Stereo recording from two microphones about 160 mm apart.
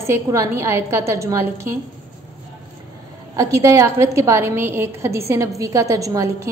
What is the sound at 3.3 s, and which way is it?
A woman's voice, 20° right (ahead or behind).